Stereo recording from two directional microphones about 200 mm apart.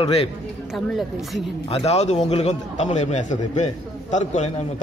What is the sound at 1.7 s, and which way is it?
A man's voice, 30° left (ahead or behind).